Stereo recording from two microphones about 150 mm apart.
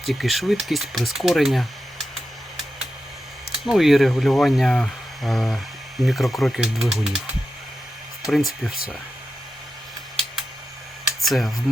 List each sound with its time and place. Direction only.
0.0 s speech: centre (ahead or behind)
3.5 s speech: centre (ahead or behind)
8.2 s speech: centre (ahead or behind)
11.0 s a sound: centre (ahead or behind)